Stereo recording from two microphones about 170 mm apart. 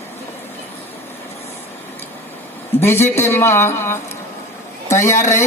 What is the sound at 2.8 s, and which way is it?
A man's voice, 15° left (ahead or behind).